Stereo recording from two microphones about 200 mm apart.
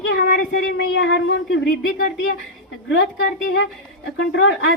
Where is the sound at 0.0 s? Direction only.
60° left (ahead or behind).